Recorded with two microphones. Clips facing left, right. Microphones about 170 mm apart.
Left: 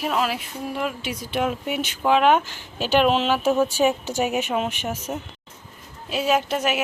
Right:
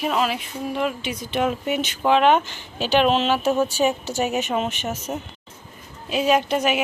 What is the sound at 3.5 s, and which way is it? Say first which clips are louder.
Speech: left 1 dB; 10° right (ahead or behind).